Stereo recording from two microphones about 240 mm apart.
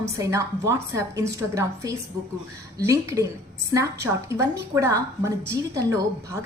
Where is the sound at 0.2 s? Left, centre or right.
Centre.